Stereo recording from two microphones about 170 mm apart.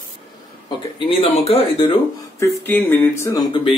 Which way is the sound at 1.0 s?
30° left (ahead or behind).